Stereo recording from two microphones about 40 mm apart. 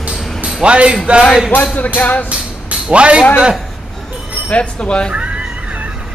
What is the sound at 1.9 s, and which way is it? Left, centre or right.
Speech, left.